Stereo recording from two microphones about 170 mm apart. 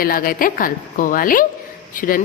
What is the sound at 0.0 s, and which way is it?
A woman's voice, 60° left (ahead or behind).